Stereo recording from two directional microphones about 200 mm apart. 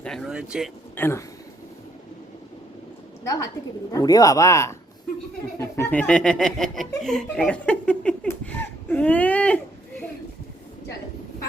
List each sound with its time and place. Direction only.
0.0 s speech: centre (ahead or behind)
0.9 s speech: 10° left (ahead or behind)
3.9 s speech: 20° left (ahead or behind)